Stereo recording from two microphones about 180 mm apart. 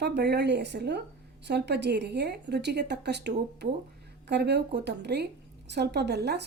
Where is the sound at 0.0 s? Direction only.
70° right (ahead or behind).